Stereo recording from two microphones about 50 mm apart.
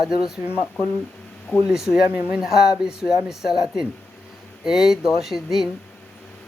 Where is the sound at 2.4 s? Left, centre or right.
Centre.